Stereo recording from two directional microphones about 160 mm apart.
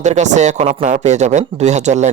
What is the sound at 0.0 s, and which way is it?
Speech, 45° right (ahead or behind).